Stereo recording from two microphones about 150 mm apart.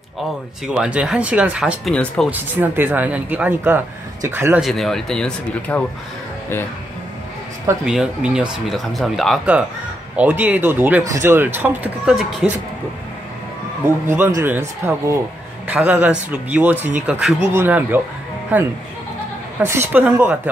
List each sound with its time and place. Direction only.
0.7 s speech: 5° right (ahead or behind)
1.9 s speech: 5° left (ahead or behind)
2.2 s speech: 10° right (ahead or behind)
4.6 s speech: centre (ahead or behind)
7.8 s speech: 5° right (ahead or behind)
10.1 s speech: 10° right (ahead or behind)
12.2 s speech: centre (ahead or behind)
13.8 s speech: 15° right (ahead or behind)